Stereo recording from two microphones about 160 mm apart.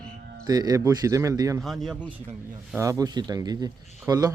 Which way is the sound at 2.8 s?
20° right (ahead or behind).